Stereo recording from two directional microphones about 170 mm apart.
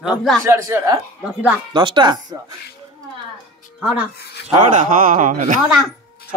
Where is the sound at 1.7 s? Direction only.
30° right (ahead or behind).